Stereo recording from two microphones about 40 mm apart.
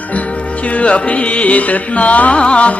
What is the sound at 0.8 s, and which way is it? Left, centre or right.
Music, left.